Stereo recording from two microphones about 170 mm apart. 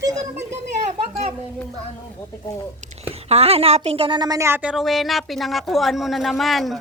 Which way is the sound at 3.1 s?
35° right (ahead or behind).